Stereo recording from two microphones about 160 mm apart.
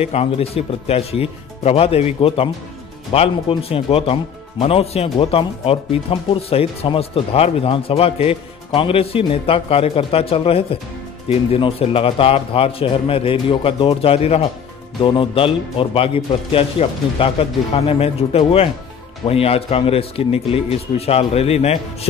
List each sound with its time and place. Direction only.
0.0 s speech: 40° left (ahead or behind)